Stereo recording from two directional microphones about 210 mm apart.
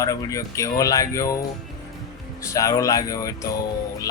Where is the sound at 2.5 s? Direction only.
15° left (ahead or behind).